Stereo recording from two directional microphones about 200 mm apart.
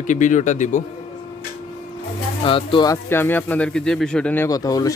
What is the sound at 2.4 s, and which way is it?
A man's voice, 25° left (ahead or behind).